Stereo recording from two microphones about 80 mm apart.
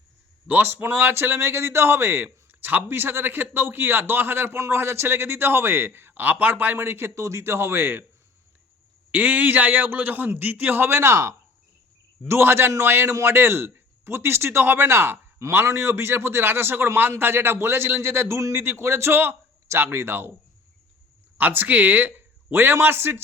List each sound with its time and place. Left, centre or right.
0.4 s a man's voice: right
9.1 s a man's voice: right
21.3 s a man's voice: right